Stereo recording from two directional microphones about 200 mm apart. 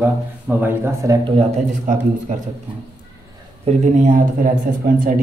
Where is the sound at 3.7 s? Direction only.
40° right (ahead or behind).